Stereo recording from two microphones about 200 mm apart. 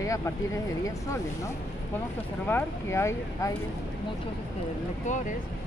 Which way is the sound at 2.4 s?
10° left (ahead or behind).